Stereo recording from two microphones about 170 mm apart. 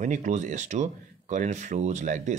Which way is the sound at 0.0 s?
45° right (ahead or behind).